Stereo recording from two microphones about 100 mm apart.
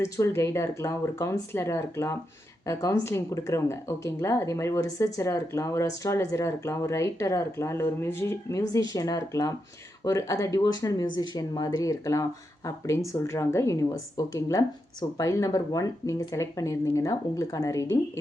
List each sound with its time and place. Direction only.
0.0 s speech: 30° left (ahead or behind)